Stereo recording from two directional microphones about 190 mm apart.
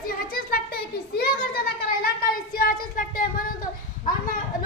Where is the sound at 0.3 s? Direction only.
50° left (ahead or behind).